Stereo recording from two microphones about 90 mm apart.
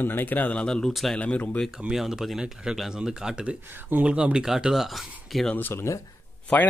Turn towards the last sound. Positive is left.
turn(degrees=15)  # may be behind; listen again after turning